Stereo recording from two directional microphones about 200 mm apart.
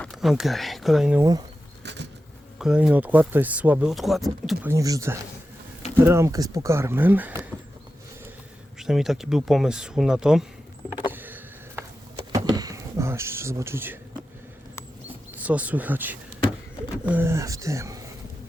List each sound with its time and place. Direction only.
0.0 s speech: centre (ahead or behind)
1.8 s insect: 60° right (ahead or behind)
2.6 s speech: 5° right (ahead or behind)
4.7 s speech: 15° right (ahead or behind)
8.8 s speech: centre (ahead or behind)
11.1 s a sound: 10° right (ahead or behind)
15.4 s speech: 5° right (ahead or behind)